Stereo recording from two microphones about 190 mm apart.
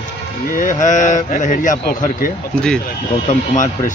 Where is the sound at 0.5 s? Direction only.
45° left (ahead or behind).